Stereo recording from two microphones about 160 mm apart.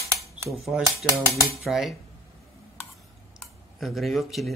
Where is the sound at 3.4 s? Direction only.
Centre (ahead or behind).